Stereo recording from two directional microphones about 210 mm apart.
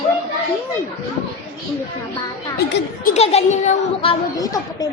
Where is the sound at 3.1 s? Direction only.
30° left (ahead or behind).